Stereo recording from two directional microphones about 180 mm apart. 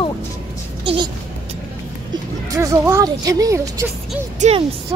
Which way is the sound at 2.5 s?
15° right (ahead or behind).